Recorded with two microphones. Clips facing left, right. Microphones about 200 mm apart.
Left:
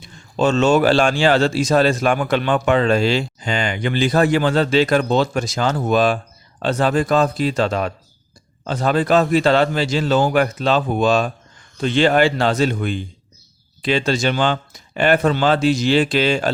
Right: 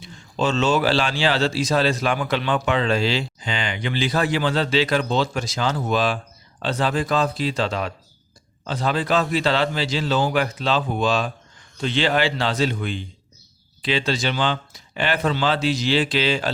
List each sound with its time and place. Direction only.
0.0 s speech: 50° left (ahead or behind)